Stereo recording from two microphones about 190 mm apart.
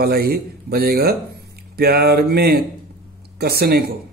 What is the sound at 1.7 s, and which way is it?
Speech, 55° right (ahead or behind).